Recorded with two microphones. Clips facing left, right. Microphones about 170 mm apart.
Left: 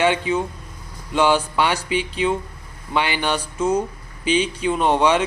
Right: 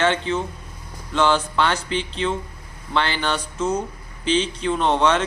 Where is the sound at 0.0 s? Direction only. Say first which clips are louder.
Left 2 dB; 10° left (ahead or behind).